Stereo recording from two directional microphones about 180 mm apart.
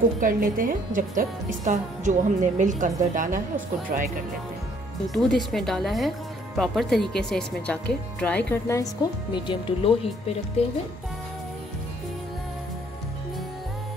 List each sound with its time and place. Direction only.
0.2 s a woman's voice: 50° right (ahead or behind)
5.1 s speech: centre (ahead or behind)
9.3 s speech: 25° left (ahead or behind)